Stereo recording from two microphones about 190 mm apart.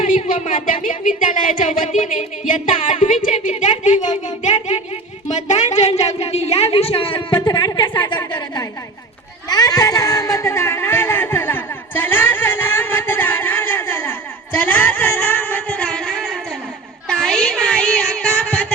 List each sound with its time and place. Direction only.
0.1 s a woman's voice: 45° left (ahead or behind); by 8.6 s 20° left (ahead or behind)
9.5 s a sound: 20° left (ahead or behind); by 16.3 s 5° left (ahead or behind)
17.1 s child singing: 5° left (ahead or behind)